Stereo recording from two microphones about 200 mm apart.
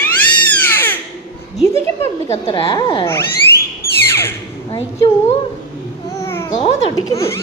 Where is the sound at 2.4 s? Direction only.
25° left (ahead or behind).